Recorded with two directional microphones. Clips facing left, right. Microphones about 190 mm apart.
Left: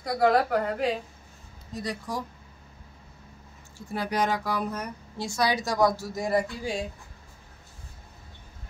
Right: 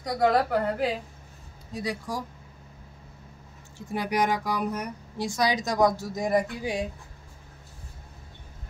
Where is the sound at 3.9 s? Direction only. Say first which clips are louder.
Right 1 dB; 15° right (ahead or behind).